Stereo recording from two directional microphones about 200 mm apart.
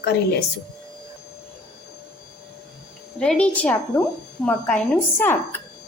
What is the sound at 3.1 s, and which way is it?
A woman's voice, 5° left (ahead or behind).